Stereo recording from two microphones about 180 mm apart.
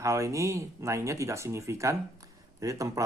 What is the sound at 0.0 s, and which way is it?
Speech, 15° right (ahead or behind).